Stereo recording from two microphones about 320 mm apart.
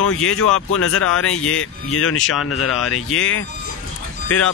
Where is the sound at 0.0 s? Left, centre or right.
Left.